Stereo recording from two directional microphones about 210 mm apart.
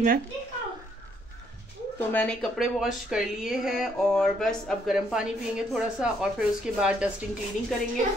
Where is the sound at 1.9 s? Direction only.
5° left (ahead or behind).